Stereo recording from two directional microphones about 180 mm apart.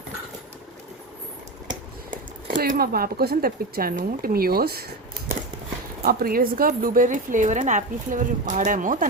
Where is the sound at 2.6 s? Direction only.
55° right (ahead or behind).